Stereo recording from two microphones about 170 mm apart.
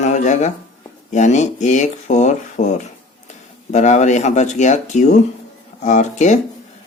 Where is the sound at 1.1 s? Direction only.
45° left (ahead or behind).